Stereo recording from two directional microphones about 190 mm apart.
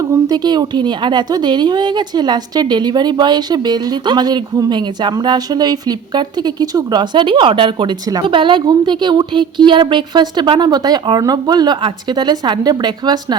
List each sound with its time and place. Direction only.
0.1 s speech: 20° right (ahead or behind)